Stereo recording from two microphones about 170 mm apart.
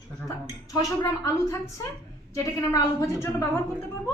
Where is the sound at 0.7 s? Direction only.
20° left (ahead or behind).